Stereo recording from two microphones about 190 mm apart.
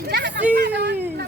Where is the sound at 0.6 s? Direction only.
60° right (ahead or behind).